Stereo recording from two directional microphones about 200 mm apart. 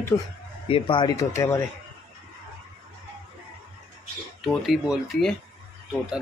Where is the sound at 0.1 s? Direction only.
15° left (ahead or behind).